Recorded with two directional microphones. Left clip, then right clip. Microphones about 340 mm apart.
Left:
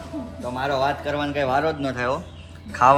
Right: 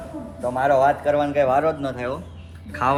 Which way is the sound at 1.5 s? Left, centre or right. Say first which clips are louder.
Right 2 dB; centre.